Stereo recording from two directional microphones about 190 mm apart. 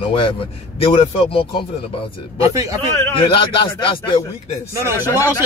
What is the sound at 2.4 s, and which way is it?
Speech, 15° right (ahead or behind).